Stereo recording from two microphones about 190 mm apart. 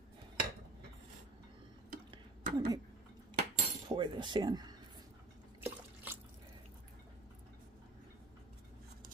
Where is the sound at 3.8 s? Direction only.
25° right (ahead or behind).